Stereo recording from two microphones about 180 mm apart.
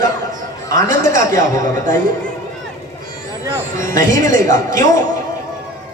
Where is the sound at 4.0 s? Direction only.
45° right (ahead or behind).